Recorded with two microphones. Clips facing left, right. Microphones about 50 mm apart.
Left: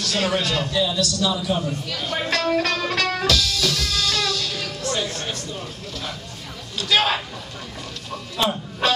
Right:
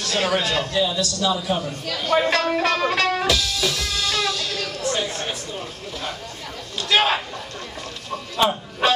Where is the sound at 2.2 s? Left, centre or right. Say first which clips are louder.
Right 1 dB; centre.